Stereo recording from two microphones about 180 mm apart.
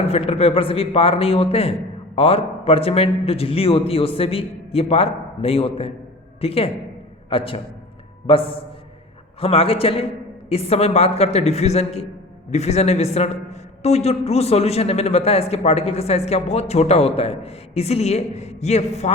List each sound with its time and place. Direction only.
0.0 s a man's voice: 35° left (ahead or behind)